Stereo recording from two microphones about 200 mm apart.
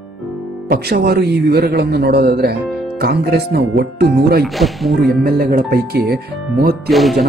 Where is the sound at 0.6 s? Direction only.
50° right (ahead or behind).